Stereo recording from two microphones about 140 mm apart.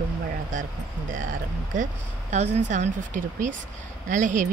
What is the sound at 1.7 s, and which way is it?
Speech, 55° right (ahead or behind).